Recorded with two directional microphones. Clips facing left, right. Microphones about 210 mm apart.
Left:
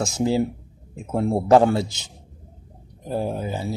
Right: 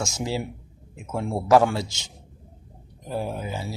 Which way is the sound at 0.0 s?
35° left (ahead or behind).